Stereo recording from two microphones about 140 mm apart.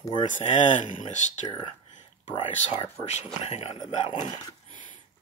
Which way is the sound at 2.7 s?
50° left (ahead or behind).